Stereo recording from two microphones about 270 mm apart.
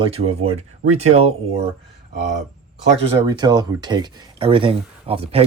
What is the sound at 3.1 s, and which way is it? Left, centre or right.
Speech, centre.